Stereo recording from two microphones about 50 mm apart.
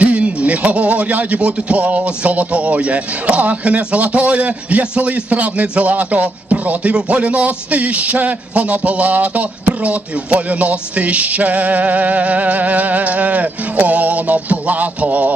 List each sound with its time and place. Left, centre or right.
0.0 s speech: right